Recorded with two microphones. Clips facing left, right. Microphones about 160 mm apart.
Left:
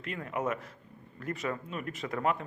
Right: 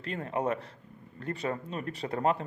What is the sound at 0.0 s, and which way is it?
Speech, 35° right (ahead or behind).